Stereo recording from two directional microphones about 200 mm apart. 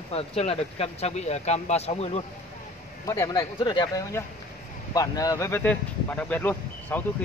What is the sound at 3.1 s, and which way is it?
Speech, 15° left (ahead or behind).